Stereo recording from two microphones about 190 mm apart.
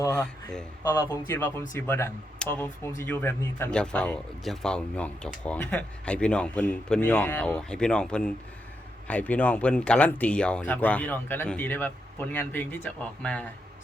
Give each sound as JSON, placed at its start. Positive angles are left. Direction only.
{"t": 0.0, "sound": "a man's voice", "side_deg": 20}